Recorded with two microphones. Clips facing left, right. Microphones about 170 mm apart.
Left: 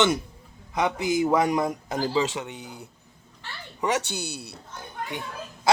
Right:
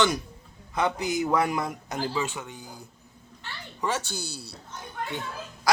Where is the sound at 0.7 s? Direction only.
20° left (ahead or behind).